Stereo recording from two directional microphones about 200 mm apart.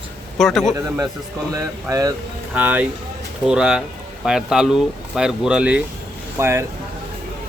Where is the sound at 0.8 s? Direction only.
15° right (ahead or behind).